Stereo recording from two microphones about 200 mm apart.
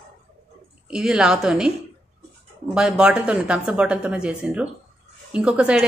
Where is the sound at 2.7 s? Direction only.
5° right (ahead or behind).